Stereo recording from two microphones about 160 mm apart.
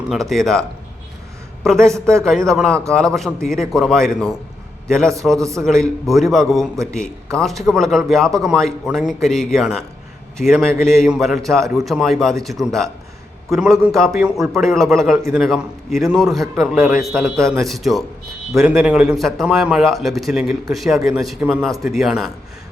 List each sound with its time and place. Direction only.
0.1 s a man's voice: centre (ahead or behind)
1.6 s a man's voice: 5° left (ahead or behind)
1.9 s speech: 15° right (ahead or behind)
2.5 s a man's voice: 5° left (ahead or behind)
5.4 s a man's voice: 20° right (ahead or behind)
5.6 s a man's voice: 5° left (ahead or behind)